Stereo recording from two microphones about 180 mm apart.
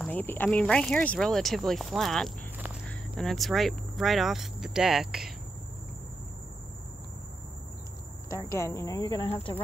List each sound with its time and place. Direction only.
0.0 s speech: 10° left (ahead or behind)
8.5 s speech: 15° left (ahead or behind)